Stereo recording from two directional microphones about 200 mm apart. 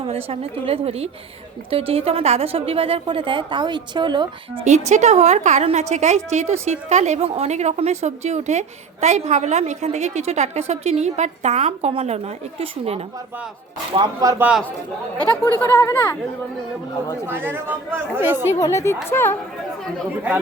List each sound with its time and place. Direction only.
0.3 s a woman's voice: 30° right (ahead or behind)
4.9 s a woman's voice: 35° right (ahead or behind)
13.9 s speech: 20° right (ahead or behind)
15.2 s speech: 10° left (ahead or behind)
17.2 s speech: 10° right (ahead or behind)
18.6 s speech: 15° left (ahead or behind)